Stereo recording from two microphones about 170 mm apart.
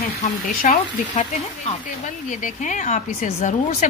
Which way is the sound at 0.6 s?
45° left (ahead or behind).